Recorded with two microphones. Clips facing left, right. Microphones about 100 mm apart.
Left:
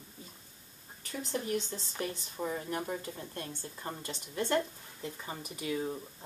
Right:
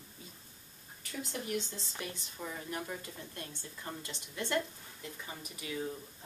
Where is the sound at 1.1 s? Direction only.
35° left (ahead or behind).